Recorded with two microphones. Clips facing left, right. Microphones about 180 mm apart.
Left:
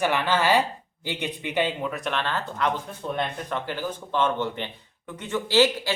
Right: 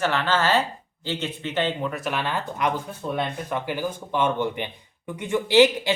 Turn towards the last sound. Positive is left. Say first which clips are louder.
# right 4 dB
turn(degrees=-15)  # may be behind; listen again after turning